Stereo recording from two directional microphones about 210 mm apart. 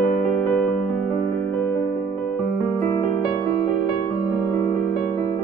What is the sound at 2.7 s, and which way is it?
Music, 15° left (ahead or behind).